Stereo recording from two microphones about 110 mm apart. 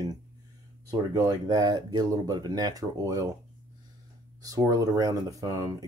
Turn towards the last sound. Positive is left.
turn(degrees=-35)  # may be behind; listen again after turning